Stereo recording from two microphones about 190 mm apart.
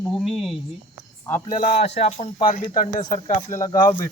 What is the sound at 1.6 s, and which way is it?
Speech, 35° left (ahead or behind).